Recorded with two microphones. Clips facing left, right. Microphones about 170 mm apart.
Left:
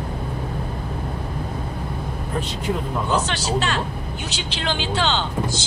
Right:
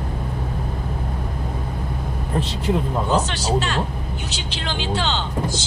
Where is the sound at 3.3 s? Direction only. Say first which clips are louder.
Right 1 dB; 75° left (ahead or behind).